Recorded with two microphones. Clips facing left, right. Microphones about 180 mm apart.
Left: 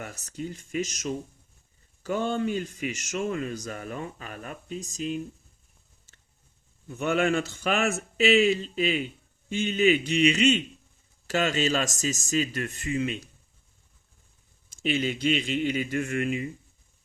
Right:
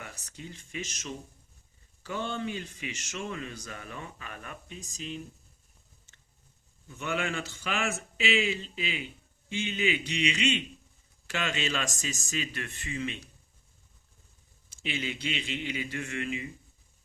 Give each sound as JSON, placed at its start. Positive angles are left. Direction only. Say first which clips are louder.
{"t": 0.0, "sound": "a man's voice", "louder": "left 9 dB", "side_deg": 45}
{"t": 6.8, "sound": "a man's voice", "louder": "left 8 dB", "side_deg": 45}
{"t": 14.7, "sound": "a man's voice", "louder": "left 8 dB", "side_deg": 45}